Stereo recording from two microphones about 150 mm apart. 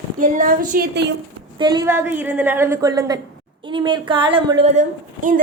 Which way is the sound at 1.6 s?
30° right (ahead or behind).